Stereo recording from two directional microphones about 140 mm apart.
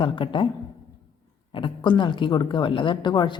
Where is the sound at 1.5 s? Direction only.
35° left (ahead or behind).